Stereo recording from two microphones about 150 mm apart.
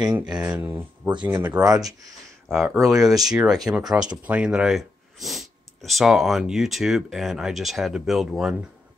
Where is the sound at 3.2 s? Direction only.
5° right (ahead or behind).